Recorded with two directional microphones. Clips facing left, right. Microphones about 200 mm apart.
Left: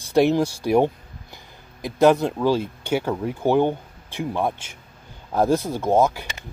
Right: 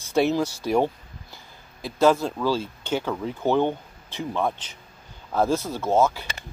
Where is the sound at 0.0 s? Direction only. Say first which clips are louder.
Left 4 dB; 15° left (ahead or behind).